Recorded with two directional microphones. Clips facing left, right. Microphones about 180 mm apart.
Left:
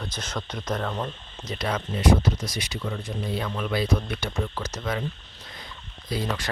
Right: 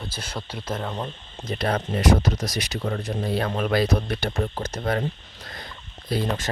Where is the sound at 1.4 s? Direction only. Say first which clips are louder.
Right 4 dB; 55° right (ahead or behind); by 2.3 s 70° right (ahead or behind).